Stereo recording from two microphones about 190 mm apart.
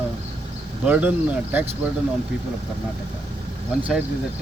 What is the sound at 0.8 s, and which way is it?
Speech, 10° right (ahead or behind).